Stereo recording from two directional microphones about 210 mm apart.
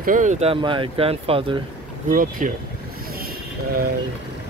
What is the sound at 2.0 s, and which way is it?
Speech, 40° right (ahead or behind).